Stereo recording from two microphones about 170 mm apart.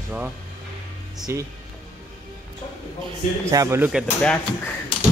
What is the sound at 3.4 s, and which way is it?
Speech, 20° right (ahead or behind).